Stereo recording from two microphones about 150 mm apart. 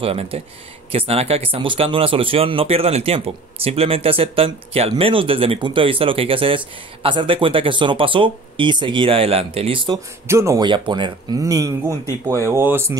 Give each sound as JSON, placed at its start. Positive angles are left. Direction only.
{"t": 0.0, "sound": "speech", "side_deg": -40}
{"t": 10.2, "sound": "speech", "side_deg": -20}
{"t": 10.7, "sound": "speech", "side_deg": -30}